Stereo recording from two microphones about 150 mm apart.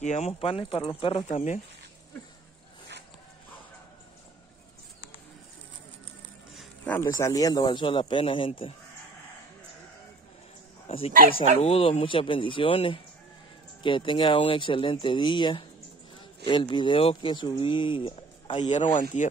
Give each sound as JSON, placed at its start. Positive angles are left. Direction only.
{"t": 0.0, "sound": "speech", "side_deg": 50}
{"t": 6.9, "sound": "speech", "side_deg": 20}
{"t": 10.9, "sound": "speech", "side_deg": 40}
{"t": 18.6, "sound": "speech", "side_deg": 50}